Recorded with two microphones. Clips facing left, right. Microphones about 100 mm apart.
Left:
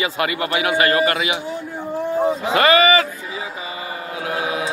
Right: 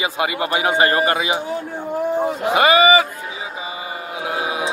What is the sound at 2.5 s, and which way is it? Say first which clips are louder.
Speech: right 2 dB; 15° right (ahead or behind).